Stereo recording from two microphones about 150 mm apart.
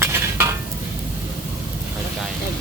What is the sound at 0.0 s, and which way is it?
Stir, 15° right (ahead or behind).